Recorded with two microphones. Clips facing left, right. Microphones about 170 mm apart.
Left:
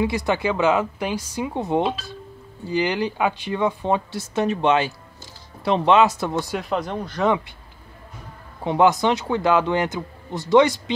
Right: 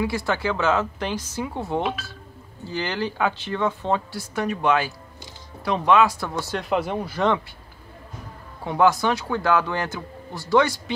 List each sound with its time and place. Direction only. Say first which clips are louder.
0.0 s a man's voice: left 3 dB; 20° left (ahead or behind)
6.5 s speech: right 1 dB; centre (ahead or behind)
8.6 s a man's voice: left 2 dB; 20° left (ahead or behind)